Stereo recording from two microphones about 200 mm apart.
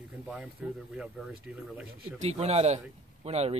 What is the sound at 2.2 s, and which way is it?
A man's voice, 30° right (ahead or behind).